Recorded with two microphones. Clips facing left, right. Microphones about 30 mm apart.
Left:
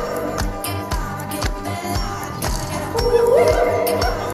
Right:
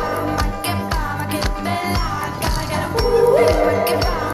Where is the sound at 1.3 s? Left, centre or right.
Right.